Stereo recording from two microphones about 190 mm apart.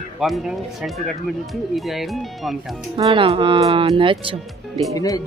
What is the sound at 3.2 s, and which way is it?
Speech, 30° right (ahead or behind).